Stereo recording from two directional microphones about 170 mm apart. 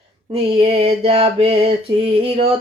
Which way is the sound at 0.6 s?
35° right (ahead or behind).